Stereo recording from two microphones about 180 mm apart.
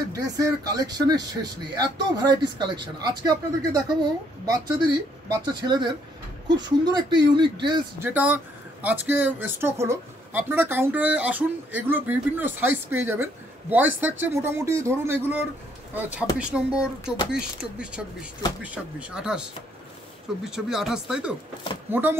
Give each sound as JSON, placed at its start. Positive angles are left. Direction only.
{"t": 0.1, "sound": "speech", "side_deg": -20}
{"t": 8.0, "sound": "speech", "side_deg": -10}
{"t": 20.4, "sound": "speech", "side_deg": -5}